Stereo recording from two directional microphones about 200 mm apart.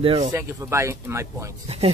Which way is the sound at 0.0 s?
25° right (ahead or behind).